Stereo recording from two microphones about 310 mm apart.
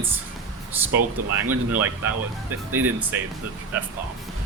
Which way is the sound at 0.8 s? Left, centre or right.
Centre.